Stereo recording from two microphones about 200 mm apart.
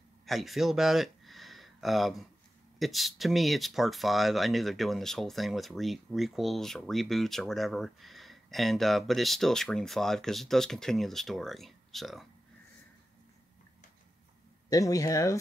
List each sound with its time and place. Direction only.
0.3 s speech: centre (ahead or behind)
14.7 s speech: 15° left (ahead or behind)